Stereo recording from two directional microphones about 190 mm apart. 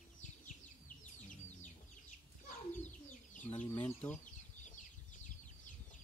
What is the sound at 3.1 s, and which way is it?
Chicken, 40° left (ahead or behind).